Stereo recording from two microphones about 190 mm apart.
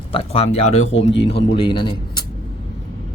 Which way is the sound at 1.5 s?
25° left (ahead or behind).